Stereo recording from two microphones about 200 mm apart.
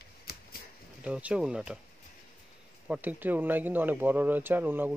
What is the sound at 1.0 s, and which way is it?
Speech, 5° right (ahead or behind).